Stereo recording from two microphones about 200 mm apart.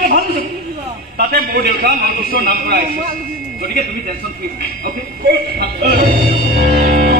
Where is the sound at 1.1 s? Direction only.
50° right (ahead or behind).